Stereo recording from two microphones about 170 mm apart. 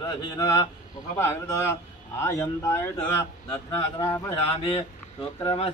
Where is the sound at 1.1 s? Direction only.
15° left (ahead or behind).